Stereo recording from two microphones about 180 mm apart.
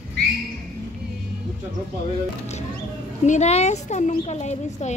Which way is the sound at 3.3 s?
40° left (ahead or behind).